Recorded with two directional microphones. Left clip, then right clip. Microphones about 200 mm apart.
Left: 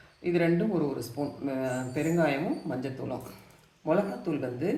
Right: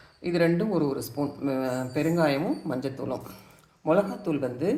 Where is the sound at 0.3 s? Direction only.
35° right (ahead or behind).